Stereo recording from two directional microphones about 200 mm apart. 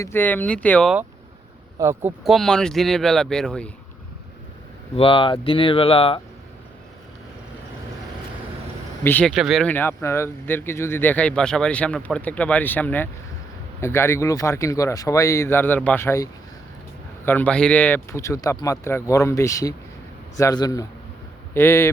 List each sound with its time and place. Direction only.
0.0 s speech: 10° left (ahead or behind)
1.8 s speech: 10° right (ahead or behind)
2.2 s speech: centre (ahead or behind)
4.9 s speech: 25° left (ahead or behind)
9.0 s speech: 10° left (ahead or behind)